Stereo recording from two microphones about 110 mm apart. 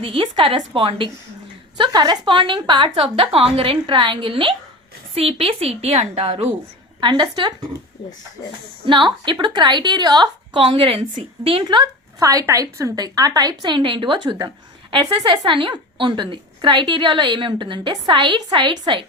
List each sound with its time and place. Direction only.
0.0 s a woman's voice: 50° right (ahead or behind)
1.8 s a woman's voice: 40° right (ahead or behind); by 6.5 s 65° right (ahead or behind)
7.0 s a woman's voice: 45° right (ahead or behind)
8.8 s a woman's voice: 45° right (ahead or behind)
12.2 s a woman's voice: 30° right (ahead or behind); by 19.0 s 45° right (ahead or behind)